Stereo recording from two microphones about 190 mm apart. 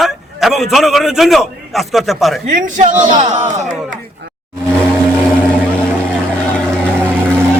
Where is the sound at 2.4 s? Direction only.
40° right (ahead or behind).